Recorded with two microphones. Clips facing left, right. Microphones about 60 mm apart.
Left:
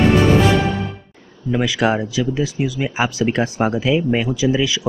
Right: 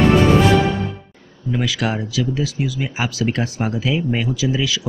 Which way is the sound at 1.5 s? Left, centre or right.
Centre.